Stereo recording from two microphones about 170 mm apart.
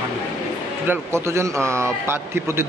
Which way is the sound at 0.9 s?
15° right (ahead or behind).